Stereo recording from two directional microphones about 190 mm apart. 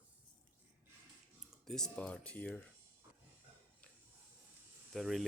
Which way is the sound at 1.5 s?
5° left (ahead or behind).